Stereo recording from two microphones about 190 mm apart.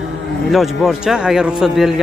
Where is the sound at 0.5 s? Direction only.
Centre (ahead or behind).